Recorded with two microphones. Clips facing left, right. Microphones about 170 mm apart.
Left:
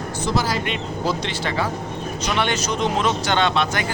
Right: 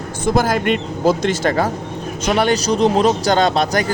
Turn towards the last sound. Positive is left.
turn(degrees=-40)  # may be behind; listen again after turning